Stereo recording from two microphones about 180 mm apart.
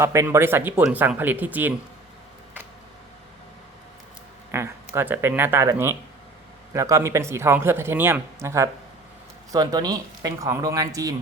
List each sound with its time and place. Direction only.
0.0 s speech: 15° right (ahead or behind)
4.5 s speech: 15° right (ahead or behind)